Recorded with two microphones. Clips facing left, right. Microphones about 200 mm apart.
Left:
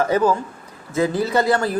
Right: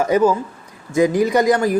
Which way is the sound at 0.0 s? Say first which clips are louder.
Right 2 dB; 10° right (ahead or behind).